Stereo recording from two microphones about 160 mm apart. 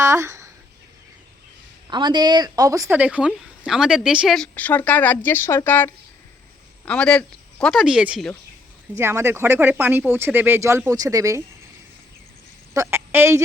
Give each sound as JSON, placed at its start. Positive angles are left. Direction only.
{"t": 0.0, "sound": "a sound", "side_deg": -20}
{"t": 1.9, "sound": "a woman's voice", "side_deg": -30}
{"t": 3.0, "sound": "speech", "side_deg": -10}
{"t": 12.7, "sound": "a woman's voice", "side_deg": -15}